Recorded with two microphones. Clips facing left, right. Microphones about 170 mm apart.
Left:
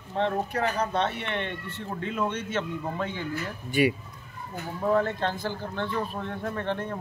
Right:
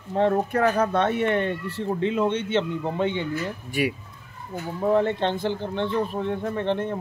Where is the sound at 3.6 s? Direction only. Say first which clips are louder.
Left 4 dB; centre (ahead or behind).